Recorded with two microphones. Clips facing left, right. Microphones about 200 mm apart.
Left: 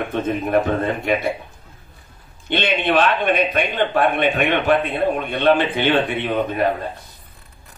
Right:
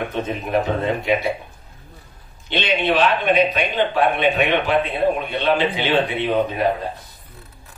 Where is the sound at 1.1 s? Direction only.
50° left (ahead or behind).